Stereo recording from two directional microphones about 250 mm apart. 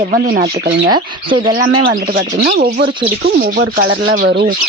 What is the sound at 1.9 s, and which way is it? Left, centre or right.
Speech, right.